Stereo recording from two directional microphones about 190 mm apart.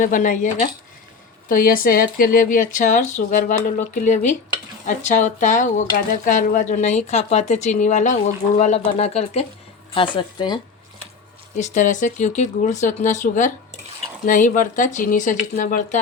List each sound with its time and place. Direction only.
0.0 s speech: 45° left (ahead or behind); by 10.6 s 25° left (ahead or behind)
11.5 s speech: 40° left (ahead or behind)